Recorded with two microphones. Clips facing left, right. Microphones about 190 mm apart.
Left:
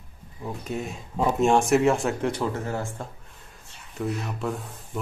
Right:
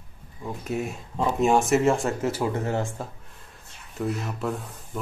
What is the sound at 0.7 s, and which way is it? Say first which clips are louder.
Speech: right 4 dB; 5° right (ahead or behind).